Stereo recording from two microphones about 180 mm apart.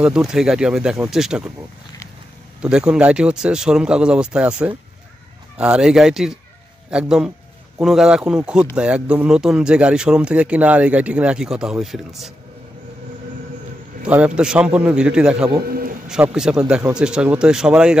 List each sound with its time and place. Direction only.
0.0 s speech: 5° right (ahead or behind)
2.6 s speech: 5° right (ahead or behind)
14.0 s speech: 5° right (ahead or behind)
15.6 s bird: 55° right (ahead or behind)
16.1 s speech: 5° right (ahead or behind)